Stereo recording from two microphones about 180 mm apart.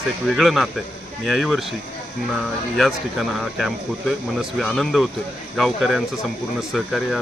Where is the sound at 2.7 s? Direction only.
Centre (ahead or behind).